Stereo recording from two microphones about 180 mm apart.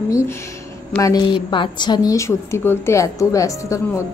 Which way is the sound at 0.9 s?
20° left (ahead or behind).